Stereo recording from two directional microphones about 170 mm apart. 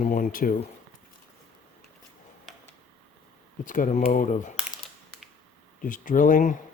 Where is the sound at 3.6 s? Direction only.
50° left (ahead or behind).